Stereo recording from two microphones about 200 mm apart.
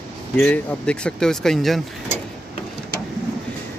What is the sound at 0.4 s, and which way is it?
Speech, 5° left (ahead or behind).